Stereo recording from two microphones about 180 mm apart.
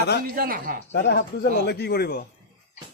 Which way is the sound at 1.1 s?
65° left (ahead or behind).